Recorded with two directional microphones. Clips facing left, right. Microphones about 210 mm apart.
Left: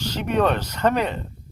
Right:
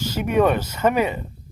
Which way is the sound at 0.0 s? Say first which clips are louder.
Right 2 dB; 10° right (ahead or behind).